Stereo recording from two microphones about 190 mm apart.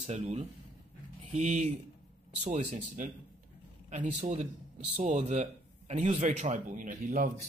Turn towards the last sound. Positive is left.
turn(degrees=-45)  # may be behind; listen again after turning